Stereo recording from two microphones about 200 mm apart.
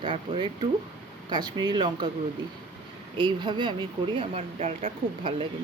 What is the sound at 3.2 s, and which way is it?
Speech, 25° right (ahead or behind).